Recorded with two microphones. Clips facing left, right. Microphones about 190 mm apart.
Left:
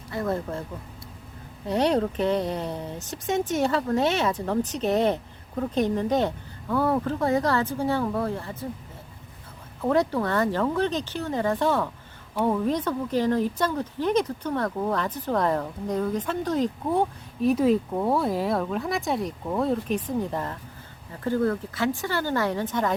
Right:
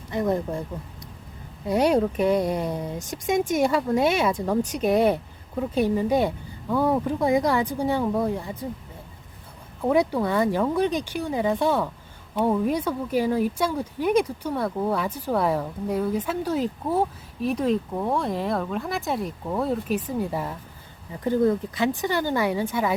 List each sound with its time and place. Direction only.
0.1 s speech: 15° right (ahead or behind)
1.6 s speech: 10° right (ahead or behind)
9.8 s speech: 10° right (ahead or behind)